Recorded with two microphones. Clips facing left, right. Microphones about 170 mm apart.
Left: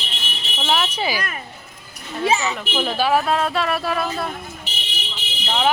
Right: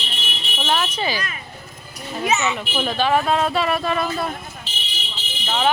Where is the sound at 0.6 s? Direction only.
10° left (ahead or behind).